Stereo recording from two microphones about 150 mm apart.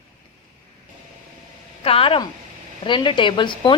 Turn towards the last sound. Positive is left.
turn(degrees=30)  # may be behind; listen again after turning